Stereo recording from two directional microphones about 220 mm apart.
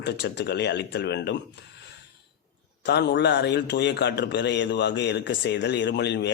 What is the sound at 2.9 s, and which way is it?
A man's voice, 50° left (ahead or behind).